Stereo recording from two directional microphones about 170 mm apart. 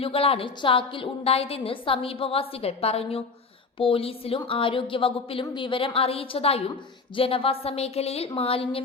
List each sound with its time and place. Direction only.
0.0 s a woman's voice: 35° left (ahead or behind)